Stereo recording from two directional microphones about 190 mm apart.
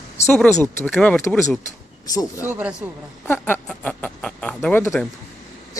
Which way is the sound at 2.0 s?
20° left (ahead or behind).